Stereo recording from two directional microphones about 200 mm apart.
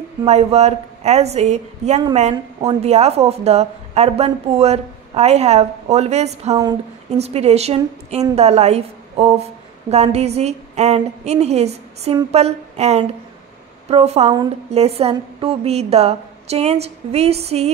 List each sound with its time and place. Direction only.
0.2 s a woman's voice: 30° right (ahead or behind)